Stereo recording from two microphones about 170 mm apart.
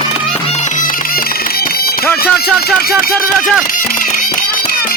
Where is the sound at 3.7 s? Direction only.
50° left (ahead or behind).